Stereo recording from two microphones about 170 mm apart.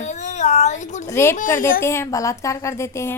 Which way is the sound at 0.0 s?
45° left (ahead or behind).